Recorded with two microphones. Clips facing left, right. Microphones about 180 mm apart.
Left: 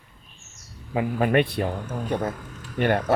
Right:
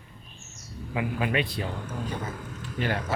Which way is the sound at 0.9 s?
50° left (ahead or behind).